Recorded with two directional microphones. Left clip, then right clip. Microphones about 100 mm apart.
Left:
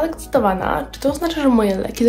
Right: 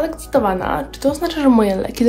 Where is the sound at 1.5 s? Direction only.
30° right (ahead or behind).